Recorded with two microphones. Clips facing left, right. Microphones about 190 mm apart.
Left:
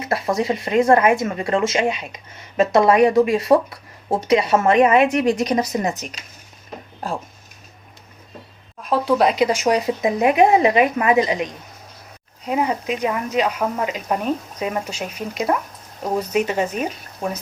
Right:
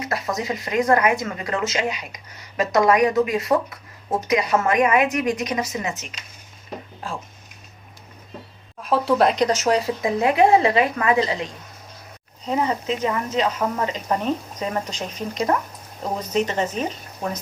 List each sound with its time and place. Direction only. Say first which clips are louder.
0.0 s speech: left 5 dB; 25° left (ahead or behind)
8.8 s speech: left 1 dB; centre (ahead or behind)